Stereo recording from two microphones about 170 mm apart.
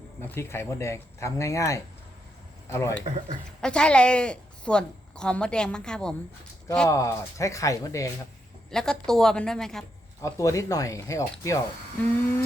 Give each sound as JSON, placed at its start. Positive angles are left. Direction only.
{"t": 0.2, "sound": "speech", "side_deg": 15}
{"t": 3.0, "sound": "speech", "side_deg": -40}
{"t": 3.6, "sound": "a woman's voice", "side_deg": 5}
{"t": 6.8, "sound": "speech", "side_deg": 20}
{"t": 8.7, "sound": "a woman's voice", "side_deg": 5}
{"t": 10.2, "sound": "speech", "side_deg": 20}